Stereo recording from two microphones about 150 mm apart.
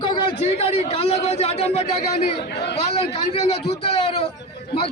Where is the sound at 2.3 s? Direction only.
90° left.